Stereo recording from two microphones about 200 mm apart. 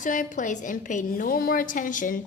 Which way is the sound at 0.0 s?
40° left (ahead or behind).